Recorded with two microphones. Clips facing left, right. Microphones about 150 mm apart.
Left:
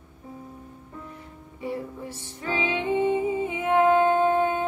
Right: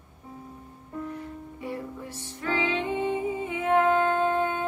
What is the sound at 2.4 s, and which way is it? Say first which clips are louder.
Music: even; 15° left (ahead or behind).